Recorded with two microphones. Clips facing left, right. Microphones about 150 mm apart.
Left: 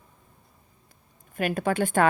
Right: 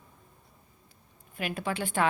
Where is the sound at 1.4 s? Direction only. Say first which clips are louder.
Left 7 dB; 50° left (ahead or behind).